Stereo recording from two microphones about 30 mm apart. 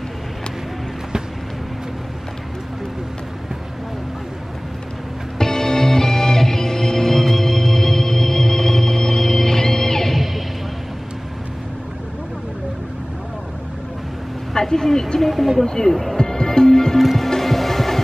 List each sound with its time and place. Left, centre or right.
5.4 s music: centre
10.1 s music: centre
14.5 s vehicle: centre
15.1 s speech: centre
15.6 s speech: centre
15.9 s speech: centre
16.2 s music: left
17.0 s music: centre
17.3 s music: centre